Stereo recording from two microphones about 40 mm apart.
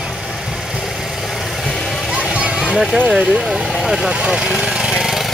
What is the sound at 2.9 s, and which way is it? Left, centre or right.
Speech, centre.